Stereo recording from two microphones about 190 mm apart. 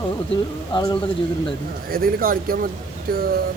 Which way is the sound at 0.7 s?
25° left (ahead or behind).